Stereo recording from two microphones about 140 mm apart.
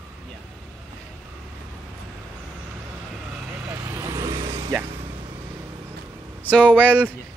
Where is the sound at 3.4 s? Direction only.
15° right (ahead or behind).